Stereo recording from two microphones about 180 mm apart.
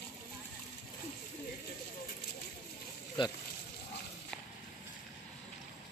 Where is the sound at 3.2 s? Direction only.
25° left (ahead or behind).